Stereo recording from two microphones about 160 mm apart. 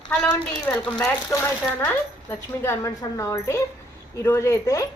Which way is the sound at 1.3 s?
20° left (ahead or behind).